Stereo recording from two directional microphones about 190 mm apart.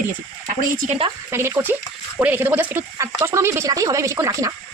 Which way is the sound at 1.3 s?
15° right (ahead or behind).